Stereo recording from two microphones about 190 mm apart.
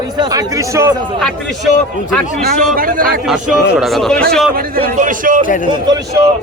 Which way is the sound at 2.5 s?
50° right (ahead or behind).